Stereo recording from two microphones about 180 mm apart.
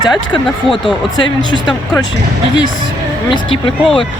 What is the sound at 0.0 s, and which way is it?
Speech, 25° left (ahead or behind).